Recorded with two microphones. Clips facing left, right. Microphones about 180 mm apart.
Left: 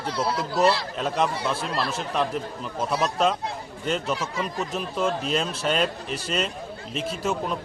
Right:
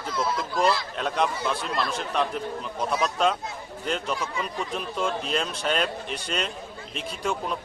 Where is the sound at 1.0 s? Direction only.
Centre (ahead or behind).